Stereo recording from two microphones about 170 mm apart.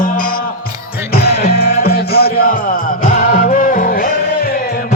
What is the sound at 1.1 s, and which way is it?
Music, 65° left (ahead or behind).